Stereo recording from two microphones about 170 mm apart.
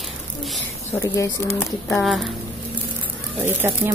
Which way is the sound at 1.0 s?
20° left (ahead or behind).